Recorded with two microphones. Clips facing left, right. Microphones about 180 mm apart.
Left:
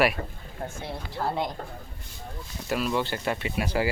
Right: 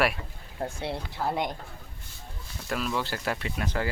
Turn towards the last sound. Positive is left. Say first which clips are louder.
# left 4 dB
turn(degrees=10)  # may be behind; listen again after turning